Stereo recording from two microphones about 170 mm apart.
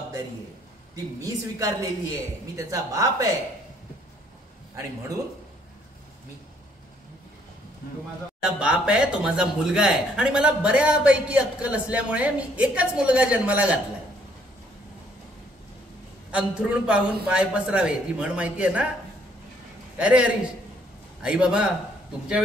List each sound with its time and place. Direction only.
0.9 s a woman's voice: 20° right (ahead or behind)
8.5 s speech: 5° right (ahead or behind)
16.3 s speech: 5° right (ahead or behind)
20.0 s speech: 5° right (ahead or behind)